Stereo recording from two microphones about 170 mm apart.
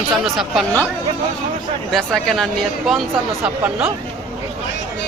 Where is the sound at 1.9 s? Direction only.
Centre (ahead or behind).